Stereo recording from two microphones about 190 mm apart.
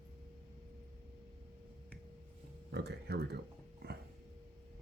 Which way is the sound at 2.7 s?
60° right (ahead or behind).